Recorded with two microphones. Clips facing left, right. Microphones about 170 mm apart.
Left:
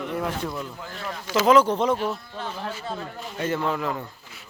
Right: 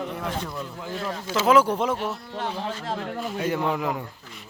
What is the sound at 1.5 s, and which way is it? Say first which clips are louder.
Speech: left 1 dB; 10° right (ahead or behind).